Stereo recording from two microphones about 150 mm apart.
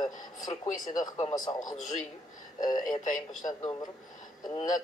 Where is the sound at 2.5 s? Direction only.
30° left (ahead or behind).